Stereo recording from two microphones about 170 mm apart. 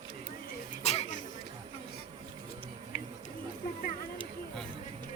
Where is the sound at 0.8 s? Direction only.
40° left (ahead or behind).